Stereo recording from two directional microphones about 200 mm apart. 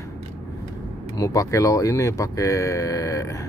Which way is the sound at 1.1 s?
15° left (ahead or behind).